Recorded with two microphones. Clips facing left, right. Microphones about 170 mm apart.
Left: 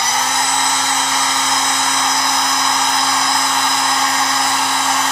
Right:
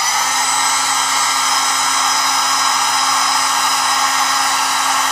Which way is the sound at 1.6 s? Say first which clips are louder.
Left 1 dB; 25° left (ahead or behind).